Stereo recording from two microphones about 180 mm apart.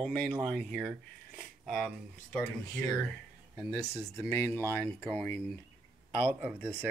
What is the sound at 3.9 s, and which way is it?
Speech, 20° left (ahead or behind).